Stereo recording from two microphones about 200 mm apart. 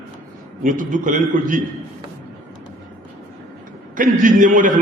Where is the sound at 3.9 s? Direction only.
40° right (ahead or behind).